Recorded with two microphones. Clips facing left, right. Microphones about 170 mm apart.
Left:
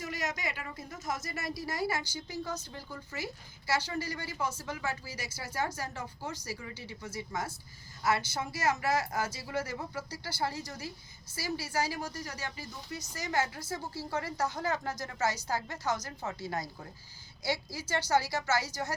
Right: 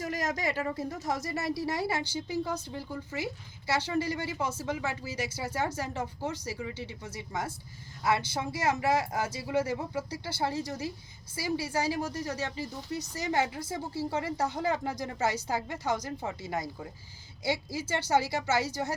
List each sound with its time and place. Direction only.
0.0 s speech: 40° right (ahead or behind); by 18.9 s 25° right (ahead or behind)